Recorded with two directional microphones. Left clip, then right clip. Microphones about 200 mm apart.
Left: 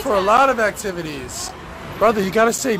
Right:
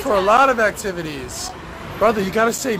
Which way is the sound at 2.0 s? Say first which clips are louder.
Left 1 dB; 30° left (ahead or behind).